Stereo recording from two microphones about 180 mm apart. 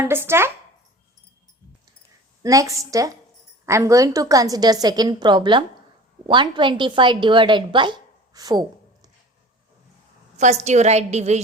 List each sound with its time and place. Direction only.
0.0 s speech: 15° right (ahead or behind)
2.4 s a woman's voice: 20° right (ahead or behind)
10.3 s a woman's voice: 40° right (ahead or behind)